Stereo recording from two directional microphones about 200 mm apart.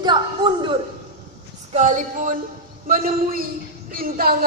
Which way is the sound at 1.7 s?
35° right (ahead or behind).